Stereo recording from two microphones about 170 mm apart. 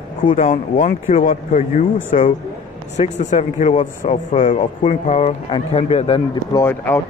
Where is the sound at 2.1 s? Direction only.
40° left (ahead or behind).